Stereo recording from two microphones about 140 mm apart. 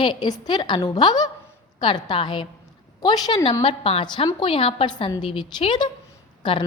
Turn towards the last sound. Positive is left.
turn(degrees=35)  # may be behind; listen again after turning